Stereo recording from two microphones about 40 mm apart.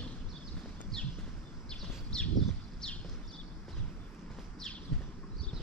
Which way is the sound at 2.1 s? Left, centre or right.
Centre.